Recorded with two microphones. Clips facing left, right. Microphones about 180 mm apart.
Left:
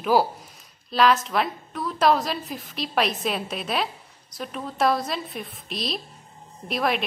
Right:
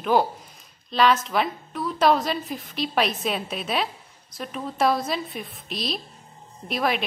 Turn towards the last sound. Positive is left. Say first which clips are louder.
# even
turn(degrees=0)  # may be behind; listen again after turning